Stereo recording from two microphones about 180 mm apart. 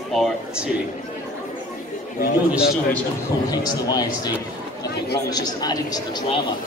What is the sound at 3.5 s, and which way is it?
Speech, 20° left (ahead or behind).